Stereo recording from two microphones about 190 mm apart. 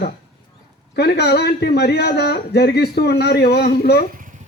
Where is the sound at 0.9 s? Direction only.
60° left (ahead or behind).